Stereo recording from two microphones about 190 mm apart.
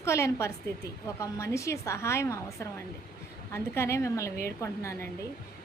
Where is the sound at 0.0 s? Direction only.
15° left (ahead or behind).